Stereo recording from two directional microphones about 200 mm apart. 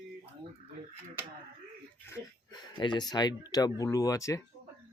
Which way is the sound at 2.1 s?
20° left (ahead or behind).